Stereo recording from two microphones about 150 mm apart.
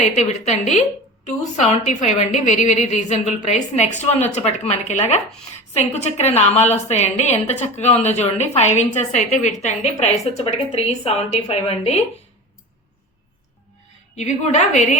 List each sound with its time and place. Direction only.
0.0 s a woman's voice: 50° left (ahead or behind)
14.2 s a woman's voice: 50° left (ahead or behind)